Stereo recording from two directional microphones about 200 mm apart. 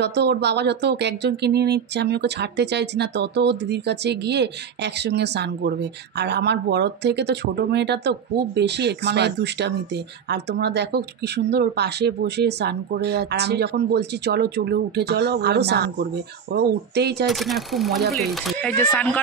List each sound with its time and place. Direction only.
0.0 s speech: 55° right (ahead or behind)
17.3 s speech: centre (ahead or behind)